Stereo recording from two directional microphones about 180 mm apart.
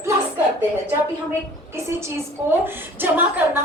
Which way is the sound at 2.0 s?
15° right (ahead or behind).